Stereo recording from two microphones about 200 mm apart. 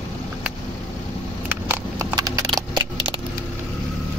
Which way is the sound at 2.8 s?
25° right (ahead or behind).